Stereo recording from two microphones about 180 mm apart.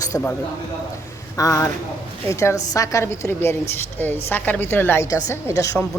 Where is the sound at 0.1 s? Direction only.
10° left (ahead or behind).